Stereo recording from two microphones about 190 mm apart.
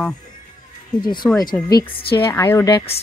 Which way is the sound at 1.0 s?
25° left (ahead or behind).